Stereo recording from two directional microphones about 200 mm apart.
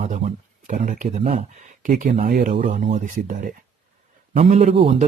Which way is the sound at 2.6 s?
35° right (ahead or behind).